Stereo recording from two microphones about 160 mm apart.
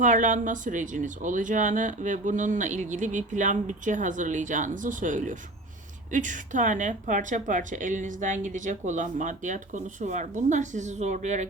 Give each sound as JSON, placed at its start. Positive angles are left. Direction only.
{"t": 0.0, "sound": "speech", "side_deg": -50}